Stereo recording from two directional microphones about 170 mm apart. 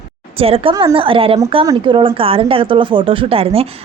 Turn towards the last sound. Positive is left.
turn(degrees=-35)  # may be behind; listen again after turning